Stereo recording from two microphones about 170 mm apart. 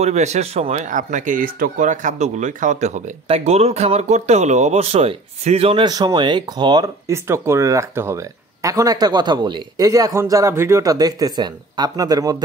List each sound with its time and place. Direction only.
0.0 s speech: 40° right (ahead or behind); by 12.4 s 20° right (ahead or behind)